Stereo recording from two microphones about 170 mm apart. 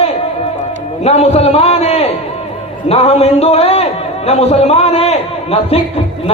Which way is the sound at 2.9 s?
35° left (ahead or behind).